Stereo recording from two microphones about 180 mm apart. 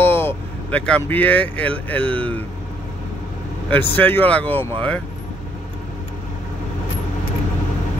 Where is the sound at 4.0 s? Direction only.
10° left (ahead or behind).